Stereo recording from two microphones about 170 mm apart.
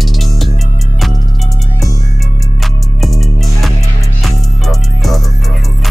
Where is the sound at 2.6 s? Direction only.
Centre (ahead or behind).